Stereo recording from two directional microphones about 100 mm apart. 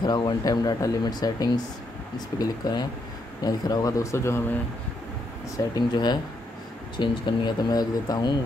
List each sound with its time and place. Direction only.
0.0 s speech: 50° left (ahead or behind); by 4.4 s 30° left (ahead or behind)
5.8 s speech: 45° left (ahead or behind)